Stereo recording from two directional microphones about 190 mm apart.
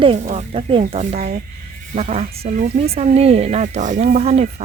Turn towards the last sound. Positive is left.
turn(degrees=-35)  # may be behind; listen again after turning